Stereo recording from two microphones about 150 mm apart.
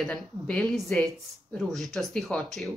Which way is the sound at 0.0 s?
5° left (ahead or behind).